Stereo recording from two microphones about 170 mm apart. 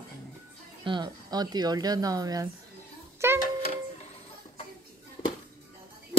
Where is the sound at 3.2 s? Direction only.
15° right (ahead or behind).